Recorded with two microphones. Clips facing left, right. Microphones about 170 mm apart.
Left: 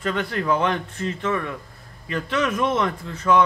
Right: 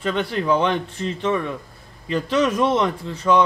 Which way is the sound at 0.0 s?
25° right (ahead or behind).